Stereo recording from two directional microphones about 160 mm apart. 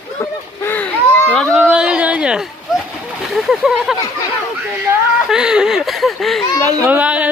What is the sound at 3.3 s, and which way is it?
Speech, centre (ahead or behind).